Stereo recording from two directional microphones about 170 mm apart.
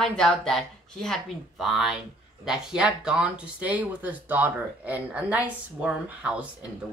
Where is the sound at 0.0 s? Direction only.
5° left (ahead or behind).